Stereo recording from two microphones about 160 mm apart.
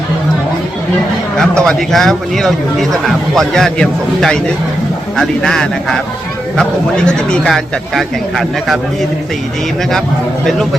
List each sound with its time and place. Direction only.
1.4 s a man's voice: 5° left (ahead or behind)